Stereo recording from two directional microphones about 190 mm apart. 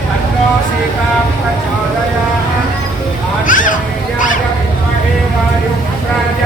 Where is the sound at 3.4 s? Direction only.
45° left (ahead or behind).